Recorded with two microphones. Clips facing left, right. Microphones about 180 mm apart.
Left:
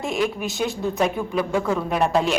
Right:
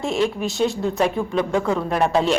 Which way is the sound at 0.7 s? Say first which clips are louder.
Right 2 dB; centre (ahead or behind).